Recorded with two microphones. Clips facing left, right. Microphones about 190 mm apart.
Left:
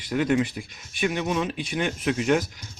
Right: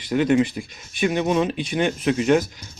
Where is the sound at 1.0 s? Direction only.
30° right (ahead or behind).